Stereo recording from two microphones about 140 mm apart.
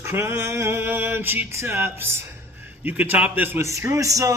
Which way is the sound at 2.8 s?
10° right (ahead or behind).